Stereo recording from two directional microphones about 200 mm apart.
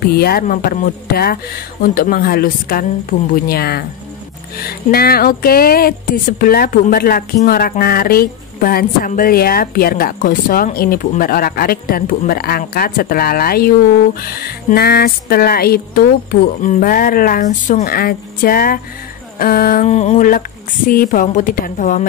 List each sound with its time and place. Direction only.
0.0 s a woman's voice: 50° left (ahead or behind)